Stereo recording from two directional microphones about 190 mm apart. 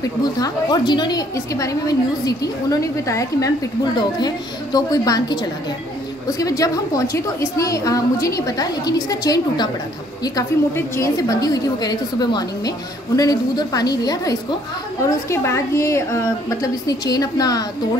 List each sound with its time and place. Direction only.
0.2 s a woman's voice: 20° left (ahead or behind)